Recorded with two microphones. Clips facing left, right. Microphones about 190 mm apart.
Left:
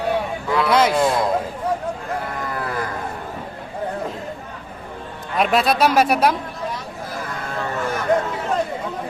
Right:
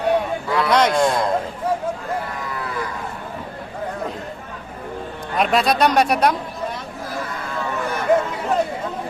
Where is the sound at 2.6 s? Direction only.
55° left (ahead or behind).